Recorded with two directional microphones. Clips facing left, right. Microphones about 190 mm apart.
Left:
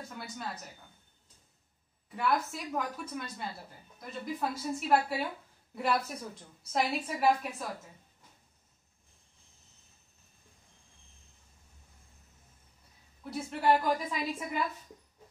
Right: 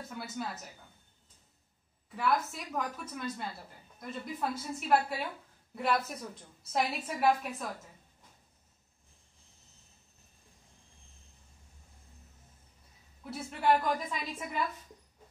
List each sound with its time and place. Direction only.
0.1 s a woman's voice: centre (ahead or behind)
2.1 s a woman's voice: centre (ahead or behind)
13.2 s a woman's voice: centre (ahead or behind)